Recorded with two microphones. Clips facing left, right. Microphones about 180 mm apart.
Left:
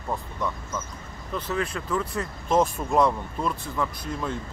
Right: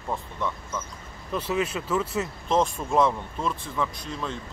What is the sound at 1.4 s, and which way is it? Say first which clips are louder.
Speech: right 2 dB; 10° right (ahead or behind).